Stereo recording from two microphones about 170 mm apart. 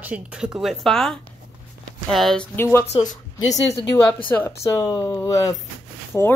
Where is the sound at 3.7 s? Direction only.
30° left (ahead or behind).